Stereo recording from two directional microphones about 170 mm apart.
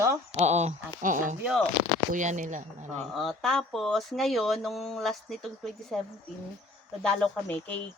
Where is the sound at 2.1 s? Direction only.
50° right (ahead or behind).